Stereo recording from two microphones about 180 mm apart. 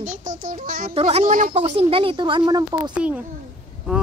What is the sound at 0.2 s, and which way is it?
Speech, 45° right (ahead or behind).